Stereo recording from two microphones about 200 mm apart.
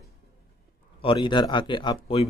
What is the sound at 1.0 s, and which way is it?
Speech, 25° left (ahead or behind).